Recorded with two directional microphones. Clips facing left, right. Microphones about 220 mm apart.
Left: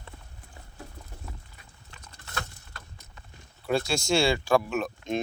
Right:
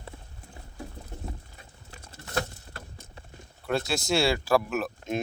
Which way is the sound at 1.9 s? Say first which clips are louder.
Right 7 dB; 30° right (ahead or behind).